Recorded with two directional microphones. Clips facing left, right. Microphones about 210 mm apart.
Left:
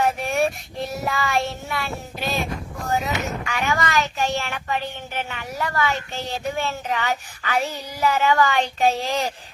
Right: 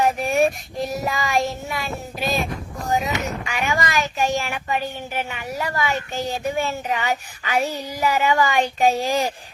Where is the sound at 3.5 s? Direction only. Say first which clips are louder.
Left 1 dB; 15° right (ahead or behind).